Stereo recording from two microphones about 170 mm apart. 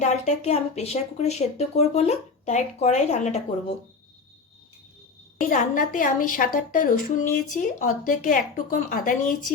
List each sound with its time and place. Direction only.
0.0 s speech: 45° left (ahead or behind)
5.4 s a woman's voice: 50° left (ahead or behind)